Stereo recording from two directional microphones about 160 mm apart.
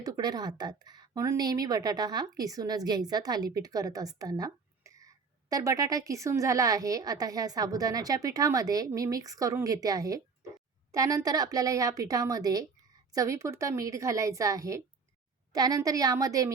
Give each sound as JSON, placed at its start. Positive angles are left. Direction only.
{"t": 0.0, "sound": "a woman's voice", "side_deg": -25}